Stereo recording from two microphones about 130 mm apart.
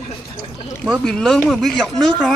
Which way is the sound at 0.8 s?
5° left (ahead or behind).